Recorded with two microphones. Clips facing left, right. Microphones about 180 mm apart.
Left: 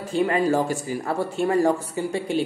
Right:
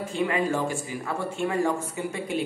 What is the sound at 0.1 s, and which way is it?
Speech, 40° left (ahead or behind).